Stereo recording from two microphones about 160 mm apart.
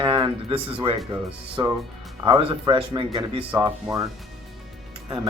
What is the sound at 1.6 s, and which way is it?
Speech, 25° right (ahead or behind).